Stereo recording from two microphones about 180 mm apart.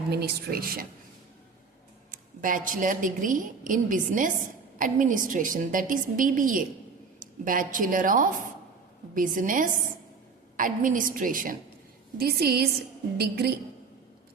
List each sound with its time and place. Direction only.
0.1 s a woman's voice: 65° right (ahead or behind)
2.0 s a woman's voice: 50° right (ahead or behind)